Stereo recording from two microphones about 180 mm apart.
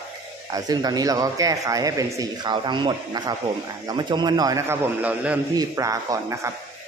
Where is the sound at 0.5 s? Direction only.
20° right (ahead or behind).